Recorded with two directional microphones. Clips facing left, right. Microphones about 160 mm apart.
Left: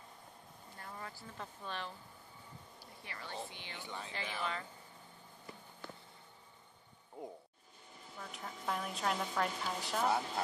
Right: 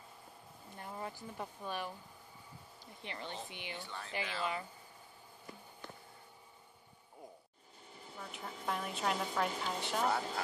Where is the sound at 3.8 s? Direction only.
15° left (ahead or behind).